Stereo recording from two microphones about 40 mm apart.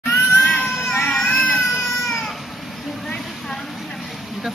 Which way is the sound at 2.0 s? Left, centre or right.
Centre.